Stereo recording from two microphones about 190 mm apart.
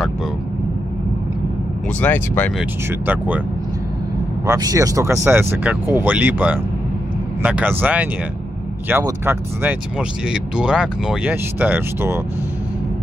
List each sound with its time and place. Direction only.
2.0 s speech: 10° left (ahead or behind)
3.1 s speech: 10° right (ahead or behind)
4.5 s speech: 20° right (ahead or behind)